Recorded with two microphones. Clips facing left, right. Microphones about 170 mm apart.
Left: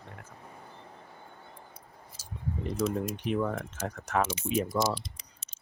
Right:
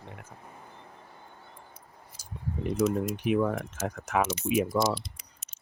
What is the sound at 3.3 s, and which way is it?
Speech, 10° right (ahead or behind).